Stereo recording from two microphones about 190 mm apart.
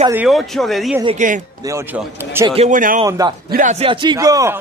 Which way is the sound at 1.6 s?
10° right (ahead or behind).